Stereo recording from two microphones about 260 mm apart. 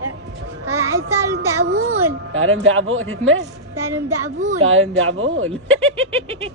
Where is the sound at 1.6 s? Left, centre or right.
Right.